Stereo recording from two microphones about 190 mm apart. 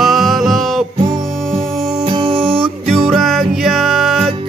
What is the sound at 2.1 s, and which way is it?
Music, 25° right (ahead or behind).